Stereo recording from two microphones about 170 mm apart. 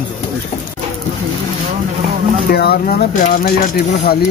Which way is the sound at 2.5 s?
70° left (ahead or behind).